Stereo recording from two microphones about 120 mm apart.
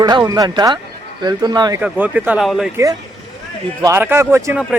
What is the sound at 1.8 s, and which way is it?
Speech, 10° right (ahead or behind).